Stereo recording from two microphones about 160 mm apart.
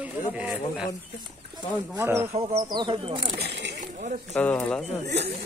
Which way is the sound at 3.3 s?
85° right.